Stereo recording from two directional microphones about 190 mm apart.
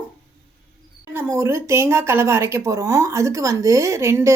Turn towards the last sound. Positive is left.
turn(degrees=-15)  # may be behind; listen again after turning